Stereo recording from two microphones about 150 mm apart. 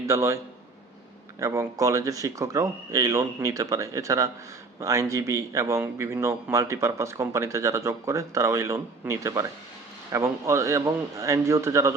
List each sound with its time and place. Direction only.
0.0 s a man's voice: 20° right (ahead or behind)
1.4 s a man's voice: 20° right (ahead or behind)